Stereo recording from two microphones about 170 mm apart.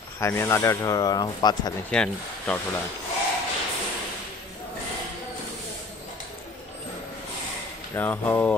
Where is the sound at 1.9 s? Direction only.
5° left (ahead or behind).